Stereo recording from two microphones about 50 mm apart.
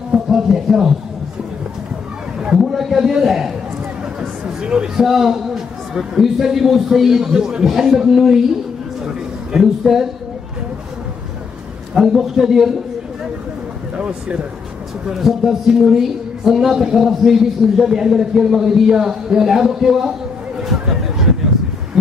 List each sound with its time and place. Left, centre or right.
0.1 s speech: centre
2.6 s speech: centre
4.2 s a sound: centre
5.0 s speech: centre
9.0 s a sound: centre
11.9 s speech: centre
13.9 s speech: right
15.0 s speech: centre